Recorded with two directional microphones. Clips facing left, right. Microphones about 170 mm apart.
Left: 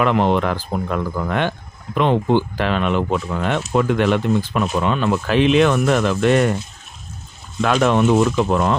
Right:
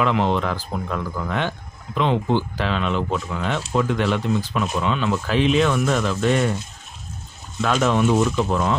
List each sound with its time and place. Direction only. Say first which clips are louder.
0.0 s speech: left 4 dB; 55° left (ahead or behind)
7.6 s speech: left 3 dB; 55° left (ahead or behind)